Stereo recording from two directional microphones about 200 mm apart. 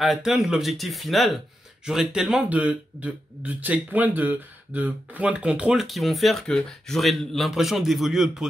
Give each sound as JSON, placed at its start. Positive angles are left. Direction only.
{"t": 0.0, "sound": "speech", "side_deg": 0}